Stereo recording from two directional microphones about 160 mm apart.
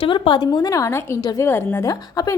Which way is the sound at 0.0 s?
30° left (ahead or behind).